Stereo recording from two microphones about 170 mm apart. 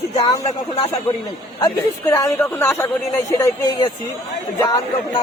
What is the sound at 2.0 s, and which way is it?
Speech, 15° left (ahead or behind).